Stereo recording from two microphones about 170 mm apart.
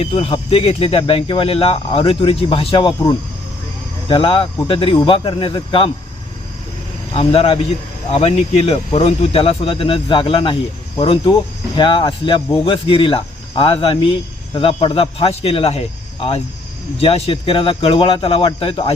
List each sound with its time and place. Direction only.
0.0 s speech: 35° left (ahead or behind)
7.1 s speech: 35° left (ahead or behind)
17.0 s speech: 35° left (ahead or behind)